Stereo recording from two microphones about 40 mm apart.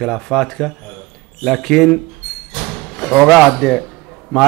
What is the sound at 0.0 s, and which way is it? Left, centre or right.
A man's voice, centre.